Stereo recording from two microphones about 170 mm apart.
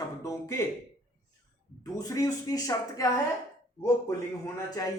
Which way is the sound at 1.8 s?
20° left (ahead or behind).